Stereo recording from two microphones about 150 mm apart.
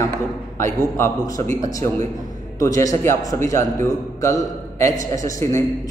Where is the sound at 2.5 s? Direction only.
20° left (ahead or behind).